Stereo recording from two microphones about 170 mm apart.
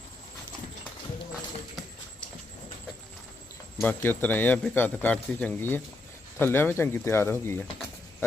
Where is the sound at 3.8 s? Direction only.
10° left (ahead or behind).